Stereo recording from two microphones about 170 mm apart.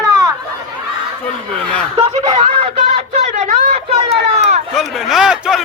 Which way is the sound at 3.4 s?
35° right (ahead or behind).